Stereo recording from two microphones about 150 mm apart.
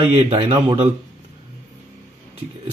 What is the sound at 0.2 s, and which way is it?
Speech, 40° right (ahead or behind).